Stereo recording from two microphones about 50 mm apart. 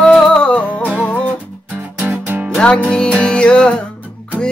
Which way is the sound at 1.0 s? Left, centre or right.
Left.